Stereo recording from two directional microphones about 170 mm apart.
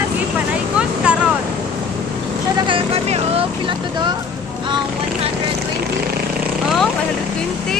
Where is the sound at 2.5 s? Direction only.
30° right (ahead or behind).